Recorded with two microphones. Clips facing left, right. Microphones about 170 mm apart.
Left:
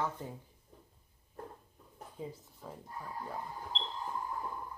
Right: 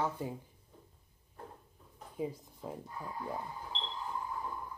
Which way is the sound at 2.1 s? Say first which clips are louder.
Right 6 dB; 15° right (ahead or behind).